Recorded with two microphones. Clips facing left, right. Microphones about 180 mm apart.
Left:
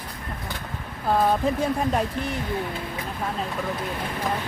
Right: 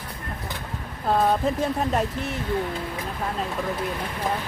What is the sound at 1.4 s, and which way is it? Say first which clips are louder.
Speech: left 1 dB; centre (ahead or behind).